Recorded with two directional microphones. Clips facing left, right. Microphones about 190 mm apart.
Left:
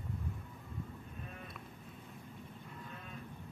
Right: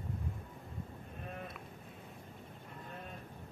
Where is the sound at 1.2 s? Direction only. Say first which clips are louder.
Right 8 dB; 45° right (ahead or behind).